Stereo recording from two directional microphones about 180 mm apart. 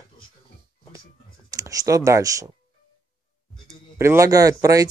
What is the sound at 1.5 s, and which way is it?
Speech, 20° right (ahead or behind).